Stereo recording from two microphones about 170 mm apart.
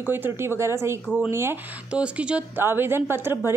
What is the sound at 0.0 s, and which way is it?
Speech, 10° right (ahead or behind).